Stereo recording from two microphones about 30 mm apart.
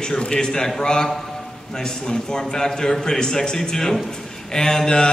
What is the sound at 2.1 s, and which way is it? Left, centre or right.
A man's voice, left.